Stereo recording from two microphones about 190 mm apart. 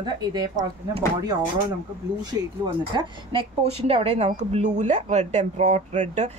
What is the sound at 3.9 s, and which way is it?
A woman's voice, 35° right (ahead or behind).